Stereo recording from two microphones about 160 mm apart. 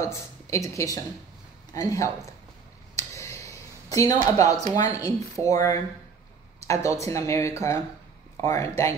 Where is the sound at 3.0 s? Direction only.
20° left (ahead or behind).